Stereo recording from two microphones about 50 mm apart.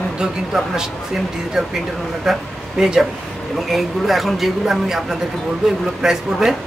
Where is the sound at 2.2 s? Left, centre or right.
Centre.